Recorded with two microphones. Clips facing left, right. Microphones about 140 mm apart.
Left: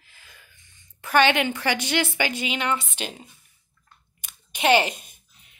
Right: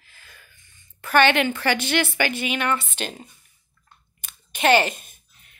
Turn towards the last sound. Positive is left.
turn(degrees=15)  # may be behind; listen again after turning